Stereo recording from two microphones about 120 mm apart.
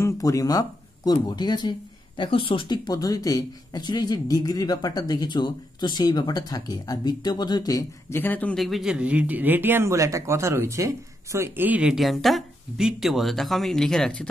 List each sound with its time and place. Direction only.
0.0 s speech: 30° left (ahead or behind)
8.1 s speech: 15° left (ahead or behind)
8.5 s a man's voice: centre (ahead or behind)